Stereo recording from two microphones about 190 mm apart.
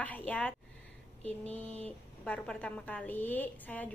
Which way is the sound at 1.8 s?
5° left (ahead or behind).